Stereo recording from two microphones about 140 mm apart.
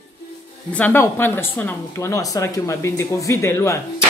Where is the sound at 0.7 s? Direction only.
10° left (ahead or behind).